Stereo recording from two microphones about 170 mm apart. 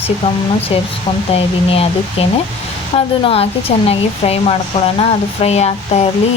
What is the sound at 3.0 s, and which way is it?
A woman's voice, 35° left (ahead or behind).